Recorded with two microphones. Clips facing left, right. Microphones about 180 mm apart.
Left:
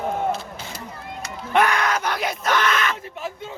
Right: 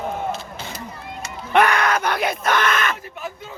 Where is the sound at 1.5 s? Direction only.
65° right (ahead or behind).